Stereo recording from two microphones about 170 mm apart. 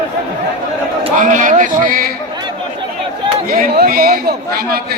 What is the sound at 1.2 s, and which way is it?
Speech, 50° right (ahead or behind).